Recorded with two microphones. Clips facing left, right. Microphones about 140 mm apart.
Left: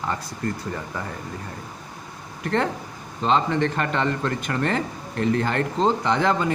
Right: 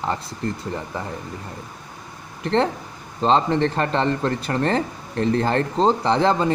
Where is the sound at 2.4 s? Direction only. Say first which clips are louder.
Right 3 dB; 30° right (ahead or behind).